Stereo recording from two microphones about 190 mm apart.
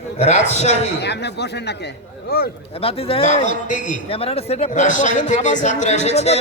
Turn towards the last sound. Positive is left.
turn(degrees=35)  # may be behind; listen again after turning